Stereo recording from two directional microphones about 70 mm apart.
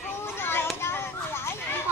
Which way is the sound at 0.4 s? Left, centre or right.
Left.